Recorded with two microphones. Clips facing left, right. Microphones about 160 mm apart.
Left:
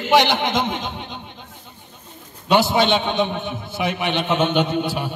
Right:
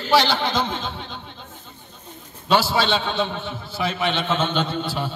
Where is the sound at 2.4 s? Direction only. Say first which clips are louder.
Left 3 dB; 20° left (ahead or behind).